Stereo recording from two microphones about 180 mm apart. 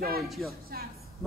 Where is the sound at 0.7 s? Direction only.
60° right (ahead or behind).